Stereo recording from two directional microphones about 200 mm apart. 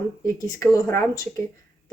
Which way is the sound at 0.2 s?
15° left (ahead or behind).